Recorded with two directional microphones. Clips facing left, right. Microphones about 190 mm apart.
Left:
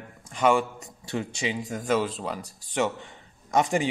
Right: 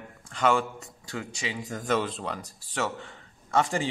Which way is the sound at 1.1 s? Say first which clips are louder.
Left 5 dB; 25° left (ahead or behind).